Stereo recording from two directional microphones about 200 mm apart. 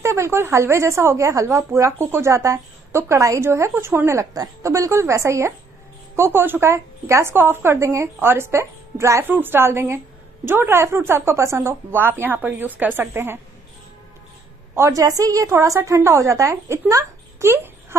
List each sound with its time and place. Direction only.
0.0 s speech: 15° right (ahead or behind)
14.8 s speech: 15° right (ahead or behind)